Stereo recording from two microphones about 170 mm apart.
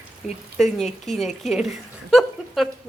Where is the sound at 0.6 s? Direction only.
Centre (ahead or behind).